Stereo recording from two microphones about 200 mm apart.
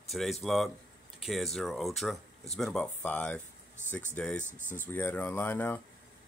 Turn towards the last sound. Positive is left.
turn(degrees=10)  # may be behind; listen again after turning